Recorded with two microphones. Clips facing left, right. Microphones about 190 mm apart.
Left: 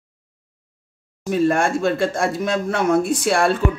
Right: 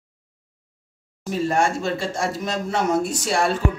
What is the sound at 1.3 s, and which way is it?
Speech, 55° left (ahead or behind).